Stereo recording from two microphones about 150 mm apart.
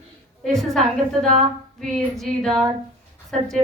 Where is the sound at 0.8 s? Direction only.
55° right (ahead or behind).